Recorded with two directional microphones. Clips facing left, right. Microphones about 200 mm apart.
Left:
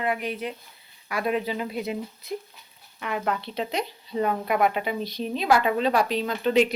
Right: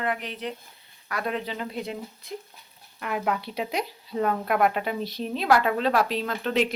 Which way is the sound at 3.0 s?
Centre (ahead or behind).